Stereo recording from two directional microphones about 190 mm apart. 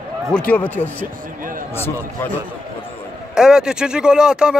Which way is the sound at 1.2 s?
45° right (ahead or behind).